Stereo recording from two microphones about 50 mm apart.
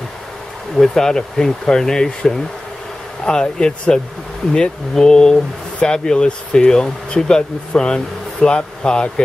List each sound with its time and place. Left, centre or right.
0.7 s speech: centre